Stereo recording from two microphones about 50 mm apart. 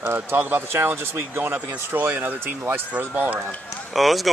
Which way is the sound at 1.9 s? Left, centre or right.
Right.